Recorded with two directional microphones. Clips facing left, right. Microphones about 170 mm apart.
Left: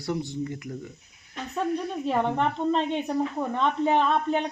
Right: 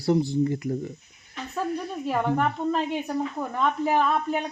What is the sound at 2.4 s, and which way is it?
A woman's voice, 25° left (ahead or behind).